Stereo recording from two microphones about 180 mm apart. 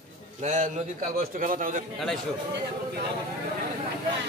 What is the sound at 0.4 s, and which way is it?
A man's voice, 40° right (ahead or behind).